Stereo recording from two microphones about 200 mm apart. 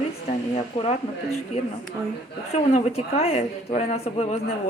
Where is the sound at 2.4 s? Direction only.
35° left (ahead or behind).